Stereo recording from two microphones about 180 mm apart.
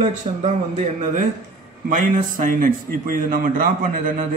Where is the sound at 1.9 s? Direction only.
45° right (ahead or behind).